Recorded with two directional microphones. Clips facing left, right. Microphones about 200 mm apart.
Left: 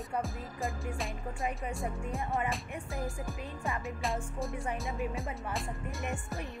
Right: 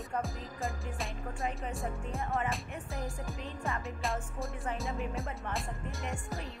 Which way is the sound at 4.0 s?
Centre (ahead or behind).